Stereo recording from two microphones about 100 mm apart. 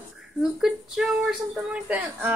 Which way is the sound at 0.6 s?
5° right (ahead or behind).